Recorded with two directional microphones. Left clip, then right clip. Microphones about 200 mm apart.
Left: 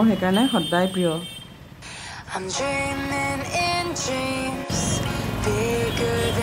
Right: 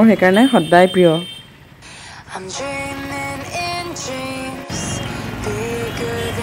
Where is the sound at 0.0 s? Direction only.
25° right (ahead or behind).